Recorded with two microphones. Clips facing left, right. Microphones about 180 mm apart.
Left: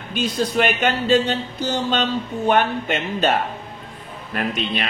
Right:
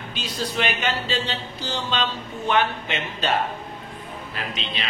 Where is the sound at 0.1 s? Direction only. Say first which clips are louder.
Left 8 dB; 50° left (ahead or behind).